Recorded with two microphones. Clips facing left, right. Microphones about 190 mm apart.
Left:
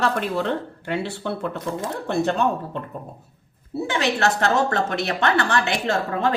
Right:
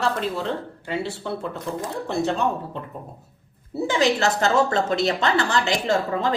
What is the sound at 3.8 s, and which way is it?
A woman's voice, 65° left (ahead or behind).